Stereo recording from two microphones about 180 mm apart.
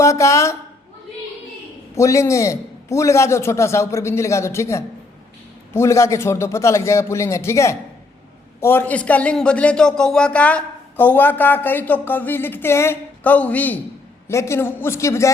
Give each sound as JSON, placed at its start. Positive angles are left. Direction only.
{"t": 0.0, "sound": "a man's voice", "side_deg": 15}
{"t": 2.0, "sound": "a man's voice", "side_deg": 15}